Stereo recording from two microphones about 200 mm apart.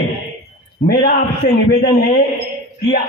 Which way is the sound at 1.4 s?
50° left (ahead or behind).